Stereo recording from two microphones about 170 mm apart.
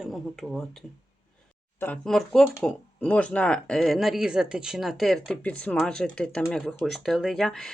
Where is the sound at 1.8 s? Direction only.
5° left (ahead or behind).